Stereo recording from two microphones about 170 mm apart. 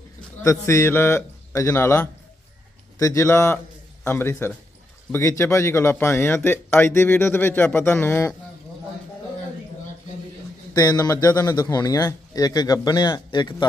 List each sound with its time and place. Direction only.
0.4 s a man's voice: 15° left (ahead or behind)
10.7 s speech: 20° left (ahead or behind)